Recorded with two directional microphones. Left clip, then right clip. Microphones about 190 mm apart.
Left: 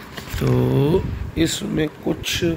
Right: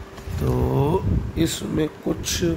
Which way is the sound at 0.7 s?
10° right (ahead or behind).